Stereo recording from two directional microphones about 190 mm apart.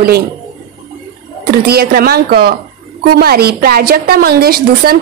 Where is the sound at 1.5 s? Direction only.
55° right (ahead or behind).